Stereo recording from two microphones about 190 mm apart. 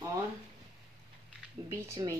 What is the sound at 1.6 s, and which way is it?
Speech, 15° right (ahead or behind).